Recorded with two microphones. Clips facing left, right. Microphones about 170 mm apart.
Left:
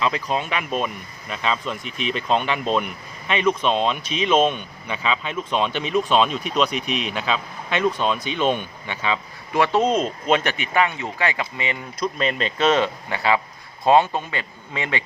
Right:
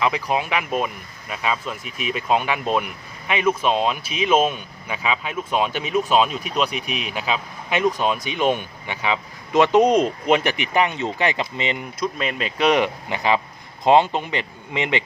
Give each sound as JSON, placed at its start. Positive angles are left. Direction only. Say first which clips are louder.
{"t": 0.0, "sound": "speech", "louder": "right 1 dB", "side_deg": -10}
{"t": 6.7, "sound": "speech", "louder": "left 3 dB", "side_deg": 35}
{"t": 7.1, "sound": "speech", "louder": "even", "side_deg": -10}
{"t": 11.9, "sound": "speech", "louder": "left 6 dB", "side_deg": -5}